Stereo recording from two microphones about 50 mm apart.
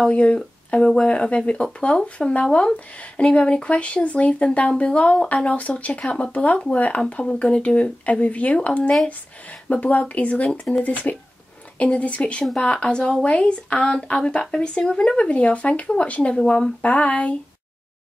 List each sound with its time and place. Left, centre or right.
0.1 s speech: left
10.5 s speech: centre
15.2 s speech: left
16.8 s speech: left